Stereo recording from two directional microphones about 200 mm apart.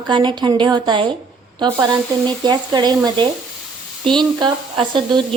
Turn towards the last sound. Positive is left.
turn(degrees=-25)  # may be behind; listen again after turning